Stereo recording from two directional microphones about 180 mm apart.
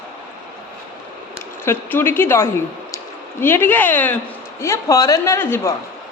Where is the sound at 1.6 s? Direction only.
15° left (ahead or behind).